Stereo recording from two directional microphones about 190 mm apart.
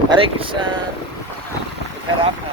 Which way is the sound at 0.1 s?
30° right (ahead or behind).